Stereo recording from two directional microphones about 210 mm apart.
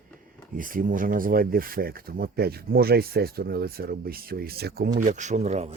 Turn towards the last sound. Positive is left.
turn(degrees=-30)  # may be behind; listen again after turning